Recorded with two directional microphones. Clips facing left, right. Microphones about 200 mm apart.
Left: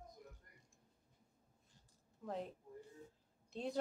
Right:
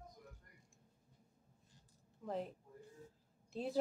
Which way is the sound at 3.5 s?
5° right (ahead or behind).